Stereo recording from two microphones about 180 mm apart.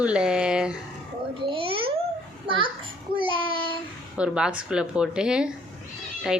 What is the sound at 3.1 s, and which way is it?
Child singing, 30° right (ahead or behind).